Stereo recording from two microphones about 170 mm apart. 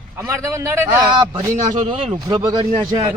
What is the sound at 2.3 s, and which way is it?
Speech, 25° right (ahead or behind).